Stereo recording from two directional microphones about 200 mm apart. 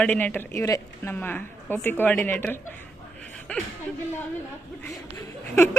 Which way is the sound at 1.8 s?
10° left (ahead or behind).